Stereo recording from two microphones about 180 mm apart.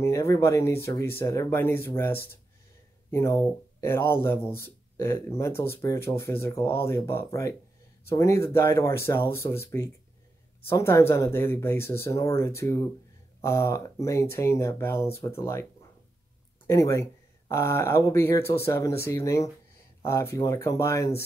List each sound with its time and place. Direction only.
0.0 s speech: 15° left (ahead or behind)
16.6 s speech: 15° left (ahead or behind)